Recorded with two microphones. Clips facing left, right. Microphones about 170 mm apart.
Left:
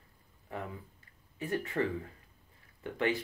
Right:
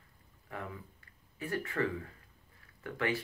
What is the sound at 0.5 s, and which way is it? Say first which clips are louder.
Speech: left 2 dB; 20° left (ahead or behind).